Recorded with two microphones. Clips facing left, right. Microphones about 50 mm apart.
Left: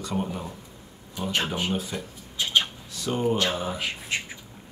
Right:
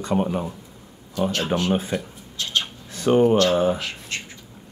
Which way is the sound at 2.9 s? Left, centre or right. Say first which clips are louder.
Right 9 dB; right.